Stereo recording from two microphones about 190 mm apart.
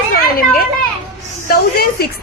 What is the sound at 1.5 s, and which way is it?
Speech, 55° left (ahead or behind).